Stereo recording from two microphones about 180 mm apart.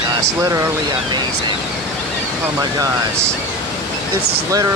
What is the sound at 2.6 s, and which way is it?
Speech, 20° right (ahead or behind).